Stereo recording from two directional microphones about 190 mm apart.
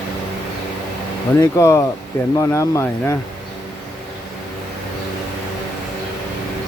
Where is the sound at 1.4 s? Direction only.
15° left (ahead or behind).